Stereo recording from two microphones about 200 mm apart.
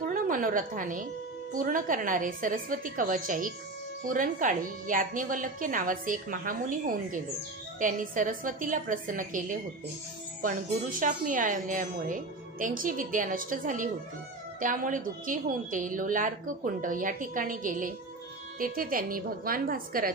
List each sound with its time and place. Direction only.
0.1 s a woman's voice: 45° right (ahead or behind)